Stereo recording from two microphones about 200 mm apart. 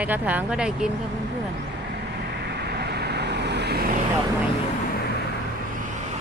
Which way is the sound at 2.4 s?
55° right (ahead or behind).